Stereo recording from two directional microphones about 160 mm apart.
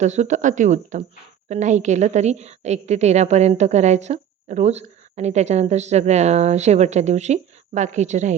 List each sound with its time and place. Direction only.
0.0 s a woman's voice: 45° right (ahead or behind)